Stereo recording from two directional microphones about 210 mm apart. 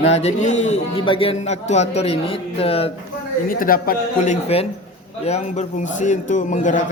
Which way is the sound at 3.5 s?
40° left (ahead or behind).